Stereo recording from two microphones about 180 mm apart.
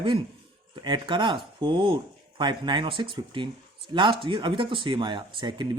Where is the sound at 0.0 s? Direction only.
25° right (ahead or behind).